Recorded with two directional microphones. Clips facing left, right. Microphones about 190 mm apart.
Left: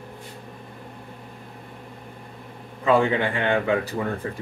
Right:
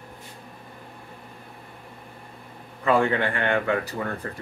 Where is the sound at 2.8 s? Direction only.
15° left (ahead or behind).